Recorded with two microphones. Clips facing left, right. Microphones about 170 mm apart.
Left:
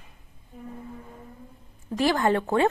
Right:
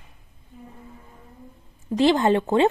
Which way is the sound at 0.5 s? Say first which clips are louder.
Left 2 dB; 45° left (ahead or behind).